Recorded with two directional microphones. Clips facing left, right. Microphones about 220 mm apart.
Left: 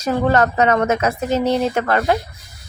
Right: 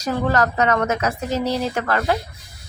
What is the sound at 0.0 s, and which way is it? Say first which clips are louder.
Speech: left 4 dB; 25° left (ahead or behind).